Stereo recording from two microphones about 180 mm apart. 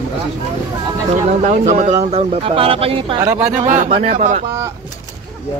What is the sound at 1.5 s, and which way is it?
Speech, 40° right (ahead or behind).